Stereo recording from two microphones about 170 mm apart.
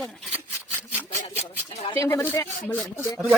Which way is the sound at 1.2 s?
35° left (ahead or behind).